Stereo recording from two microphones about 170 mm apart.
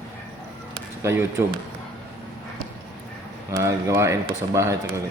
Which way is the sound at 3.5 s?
15° right (ahead or behind).